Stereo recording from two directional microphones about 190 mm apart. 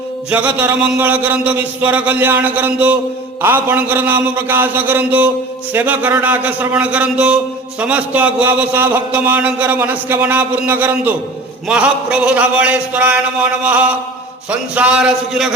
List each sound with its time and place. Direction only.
0.3 s a man's voice: 5° right (ahead or behind)